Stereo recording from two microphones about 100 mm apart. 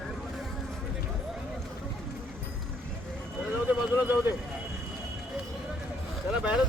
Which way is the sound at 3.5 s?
20° right (ahead or behind).